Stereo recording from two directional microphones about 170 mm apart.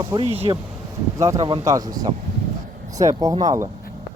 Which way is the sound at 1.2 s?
20° right (ahead or behind).